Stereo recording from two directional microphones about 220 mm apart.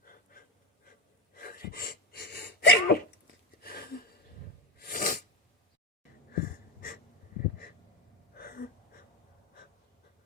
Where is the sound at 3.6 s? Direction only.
45° left (ahead or behind).